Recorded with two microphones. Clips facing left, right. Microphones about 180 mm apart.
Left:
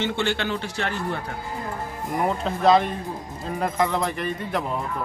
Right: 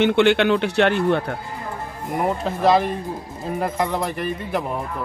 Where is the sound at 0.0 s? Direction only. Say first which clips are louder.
Right 9 dB; 65° right (ahead or behind).